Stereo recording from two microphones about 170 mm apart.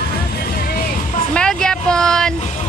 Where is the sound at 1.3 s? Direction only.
5° left (ahead or behind).